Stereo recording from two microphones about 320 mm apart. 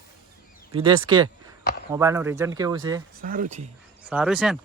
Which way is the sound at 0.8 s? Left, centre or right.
Centre.